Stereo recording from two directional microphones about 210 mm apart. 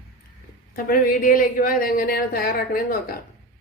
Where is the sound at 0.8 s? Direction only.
40° left (ahead or behind).